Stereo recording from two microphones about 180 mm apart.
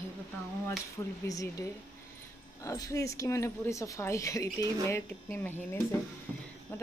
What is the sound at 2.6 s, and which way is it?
A woman's voice, 20° left (ahead or behind).